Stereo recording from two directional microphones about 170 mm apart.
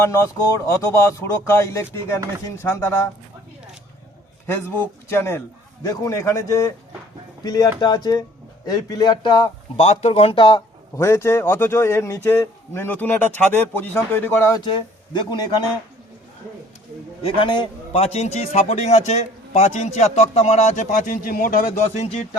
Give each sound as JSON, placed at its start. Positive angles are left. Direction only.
{"t": 0.0, "sound": "a man's voice", "side_deg": 15}
{"t": 4.4, "sound": "a man's voice", "side_deg": 15}
{"t": 10.9, "sound": "a man's voice", "side_deg": 15}
{"t": 15.1, "sound": "speech", "side_deg": 25}
{"t": 17.2, "sound": "a man's voice", "side_deg": 30}
{"t": 21.8, "sound": "a man's voice", "side_deg": 40}